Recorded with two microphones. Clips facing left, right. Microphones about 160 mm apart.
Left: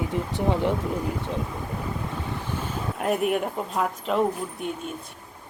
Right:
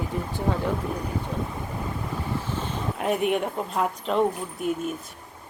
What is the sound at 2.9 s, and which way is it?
A woman's voice, centre (ahead or behind).